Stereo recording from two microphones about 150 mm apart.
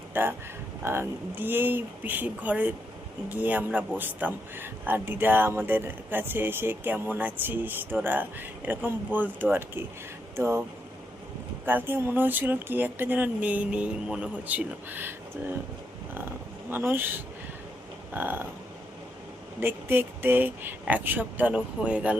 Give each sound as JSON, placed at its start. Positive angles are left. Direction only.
{"t": 0.1, "sound": "a man's voice", "side_deg": -15}
{"t": 11.6, "sound": "a man's voice", "side_deg": -15}
{"t": 16.6, "sound": "a man's voice", "side_deg": -15}
{"t": 19.5, "sound": "a man's voice", "side_deg": -15}